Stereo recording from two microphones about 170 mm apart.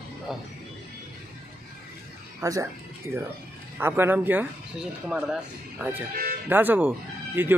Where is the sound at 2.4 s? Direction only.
20° right (ahead or behind).